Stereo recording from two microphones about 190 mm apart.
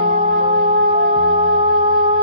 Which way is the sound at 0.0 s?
25° right (ahead or behind).